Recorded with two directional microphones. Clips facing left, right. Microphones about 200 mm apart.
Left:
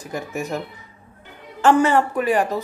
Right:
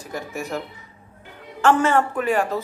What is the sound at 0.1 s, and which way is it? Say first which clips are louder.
Speech: left 2 dB; 20° left (ahead or behind).